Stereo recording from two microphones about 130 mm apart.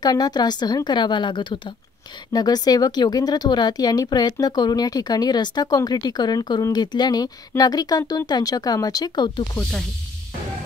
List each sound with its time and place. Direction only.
0.0 s speech: 30° left (ahead or behind)
9.6 s speech: 5° left (ahead or behind)